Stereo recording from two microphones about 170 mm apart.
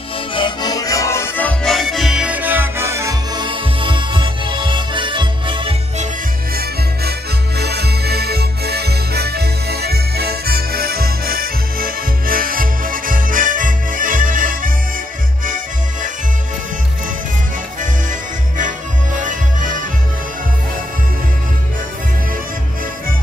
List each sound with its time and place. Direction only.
0.3 s music: 25° left (ahead or behind); by 5.8 s 30° right (ahead or behind)
6.5 s music: 65° right (ahead or behind); by 16.1 s 50° right (ahead or behind)
19.1 s music: 50° right (ahead or behind)